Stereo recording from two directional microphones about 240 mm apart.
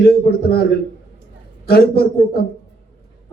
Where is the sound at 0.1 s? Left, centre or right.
Left.